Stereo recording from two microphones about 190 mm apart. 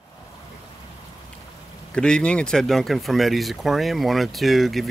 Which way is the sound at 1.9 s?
5° left (ahead or behind).